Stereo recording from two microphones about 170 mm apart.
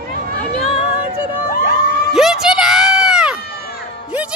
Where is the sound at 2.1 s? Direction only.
Centre (ahead or behind).